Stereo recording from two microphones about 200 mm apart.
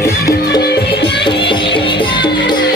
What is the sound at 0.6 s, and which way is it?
Music, 55° left (ahead or behind).